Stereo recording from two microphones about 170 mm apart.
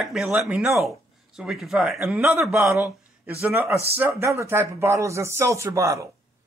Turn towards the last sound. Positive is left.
turn(degrees=-20)  # may be behind; listen again after turning